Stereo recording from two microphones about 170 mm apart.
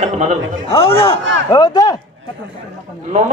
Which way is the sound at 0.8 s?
35° left (ahead or behind).